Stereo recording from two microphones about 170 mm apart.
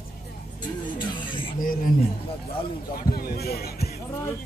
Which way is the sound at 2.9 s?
60° left (ahead or behind).